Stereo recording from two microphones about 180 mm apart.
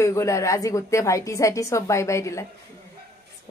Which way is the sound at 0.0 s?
15° left (ahead or behind).